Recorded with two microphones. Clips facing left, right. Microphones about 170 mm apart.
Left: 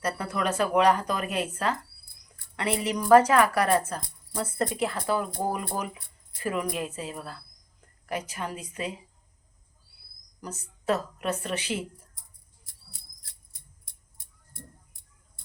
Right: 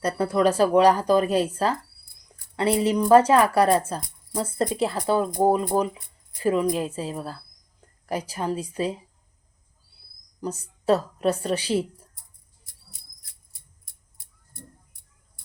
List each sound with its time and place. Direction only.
0.0 s speech: 35° right (ahead or behind)
10.4 s speech: 30° right (ahead or behind)